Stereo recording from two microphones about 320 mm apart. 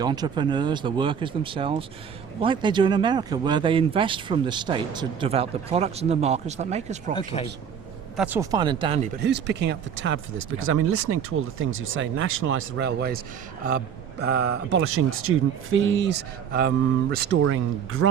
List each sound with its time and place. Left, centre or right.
0.0 s speech: centre
7.2 s a man's voice: centre
8.1 s speech: centre
9.2 s speech: right
14.3 s speech: right
17.4 s speech: right